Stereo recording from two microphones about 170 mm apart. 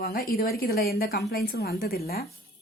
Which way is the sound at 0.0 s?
70° left (ahead or behind).